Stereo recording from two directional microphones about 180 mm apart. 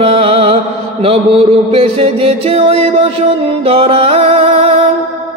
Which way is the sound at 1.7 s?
30° right (ahead or behind).